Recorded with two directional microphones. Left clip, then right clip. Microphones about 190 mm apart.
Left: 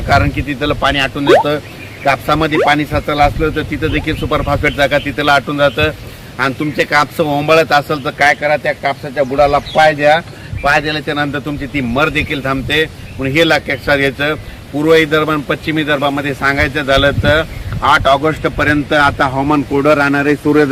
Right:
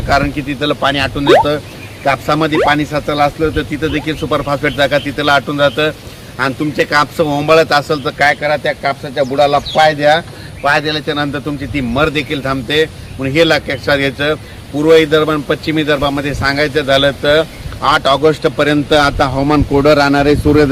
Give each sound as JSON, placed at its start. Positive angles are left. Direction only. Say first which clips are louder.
{"t": 0.1, "sound": "a man's voice", "louder": "left 1 dB", "side_deg": 0}
{"t": 18.5, "sound": "a man's voice", "louder": "right 1 dB", "side_deg": -45}